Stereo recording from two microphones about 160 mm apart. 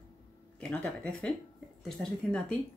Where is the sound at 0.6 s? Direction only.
5° left (ahead or behind).